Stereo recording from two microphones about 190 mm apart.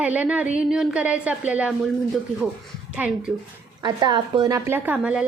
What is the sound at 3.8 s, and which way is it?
A woman's voice, 20° right (ahead or behind).